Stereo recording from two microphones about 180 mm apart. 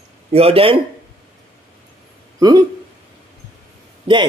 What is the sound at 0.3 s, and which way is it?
Speech, 35° right (ahead or behind).